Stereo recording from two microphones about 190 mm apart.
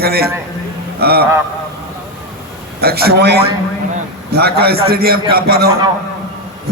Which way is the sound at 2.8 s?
55° right (ahead or behind).